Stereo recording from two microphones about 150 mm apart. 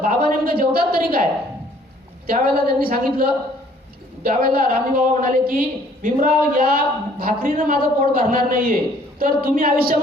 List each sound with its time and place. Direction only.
0.1 s a woman's voice: 80° right
2.2 s a woman's voice: 85° right